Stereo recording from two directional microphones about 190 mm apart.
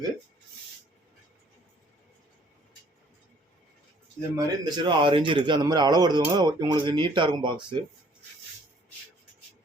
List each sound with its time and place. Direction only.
4.4 s a man's voice: 25° right (ahead or behind)